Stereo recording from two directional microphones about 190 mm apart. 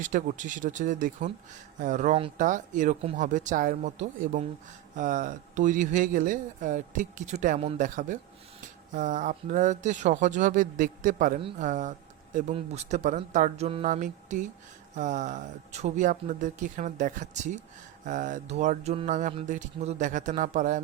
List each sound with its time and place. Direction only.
0.0 s mantra: 40° right (ahead or behind)
4.9 s speech: 45° right (ahead or behind)
8.9 s mantra: 40° right (ahead or behind)
11.6 s speech: 40° right (ahead or behind)
12.5 s mantra: 35° right (ahead or behind)